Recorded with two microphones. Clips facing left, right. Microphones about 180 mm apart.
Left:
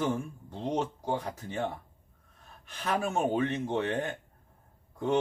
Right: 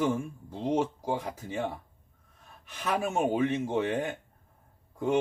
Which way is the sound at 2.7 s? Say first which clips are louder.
Right 1 dB; 10° right (ahead or behind).